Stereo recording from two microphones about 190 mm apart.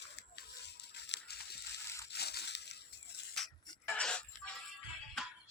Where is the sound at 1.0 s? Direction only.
60° left (ahead or behind).